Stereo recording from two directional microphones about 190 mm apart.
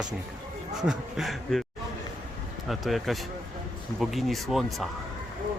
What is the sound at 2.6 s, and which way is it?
Speech, centre (ahead or behind).